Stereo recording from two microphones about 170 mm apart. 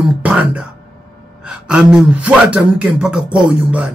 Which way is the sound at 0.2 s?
10° right (ahead or behind).